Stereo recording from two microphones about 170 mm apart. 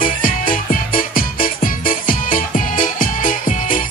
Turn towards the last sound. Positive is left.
turn(degrees=50)  # may be behind; listen again after turning